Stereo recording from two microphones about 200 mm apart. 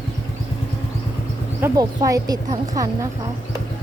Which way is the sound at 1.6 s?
15° right (ahead or behind).